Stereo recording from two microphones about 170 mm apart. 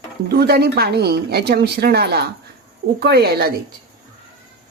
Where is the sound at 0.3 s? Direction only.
70° right (ahead or behind).